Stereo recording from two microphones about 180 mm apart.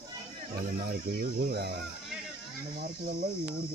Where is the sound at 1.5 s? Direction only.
65° right (ahead or behind).